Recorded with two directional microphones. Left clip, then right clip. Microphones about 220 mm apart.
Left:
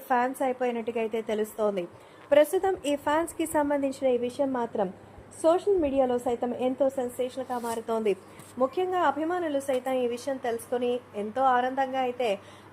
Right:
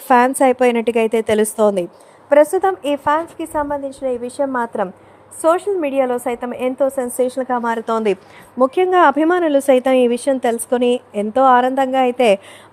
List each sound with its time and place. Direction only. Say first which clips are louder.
0.1 s a woman's voice: right 14 dB; 35° right (ahead or behind)
2.3 s a woman's voice: right 9 dB; 10° right (ahead or behind)
7.2 s a woman's voice: right 13 dB; 40° right (ahead or behind)
7.5 s a woman's voice: right 12 dB; 20° right (ahead or behind)
8.5 s a woman's voice: right 13 dB; 40° right (ahead or behind)